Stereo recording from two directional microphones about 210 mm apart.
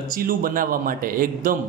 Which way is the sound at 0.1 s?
45° right (ahead or behind).